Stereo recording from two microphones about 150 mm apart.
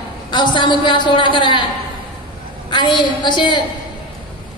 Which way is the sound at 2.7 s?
30° left (ahead or behind).